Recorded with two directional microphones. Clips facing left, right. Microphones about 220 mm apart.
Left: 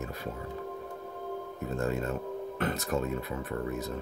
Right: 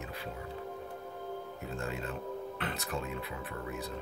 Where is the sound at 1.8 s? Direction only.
45° left (ahead or behind).